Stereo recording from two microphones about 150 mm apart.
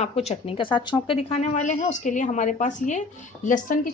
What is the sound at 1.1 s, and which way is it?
A woman's voice, 45° left (ahead or behind).